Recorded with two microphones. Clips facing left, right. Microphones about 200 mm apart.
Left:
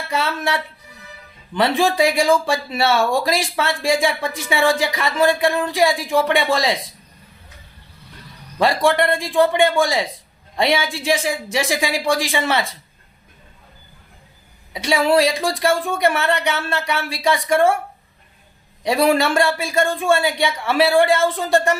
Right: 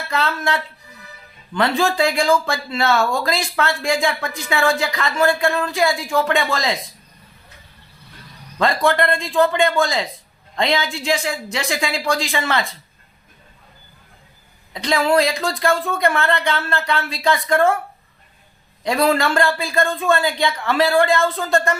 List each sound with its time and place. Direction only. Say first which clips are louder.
0.3 s speech: even; 15° left (ahead or behind)
8.5 s speech: left 1 dB; 15° left (ahead or behind)
14.7 s speech: left 1 dB; 10° left (ahead or behind)
18.8 s speech: left 1 dB; 15° left (ahead or behind)